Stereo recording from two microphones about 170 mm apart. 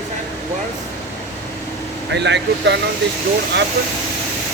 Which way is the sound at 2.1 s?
90° right.